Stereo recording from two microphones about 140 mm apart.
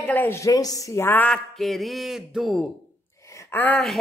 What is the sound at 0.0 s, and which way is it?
Speech, 10° left (ahead or behind).